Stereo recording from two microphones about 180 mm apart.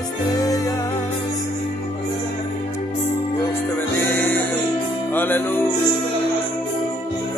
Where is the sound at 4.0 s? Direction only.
10° left (ahead or behind).